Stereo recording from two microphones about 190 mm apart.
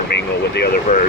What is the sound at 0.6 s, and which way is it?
Speech, 55° left (ahead or behind).